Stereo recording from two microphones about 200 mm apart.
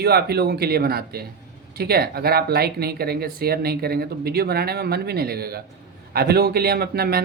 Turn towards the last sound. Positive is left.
turn(degrees=-50)  # may be behind; listen again after turning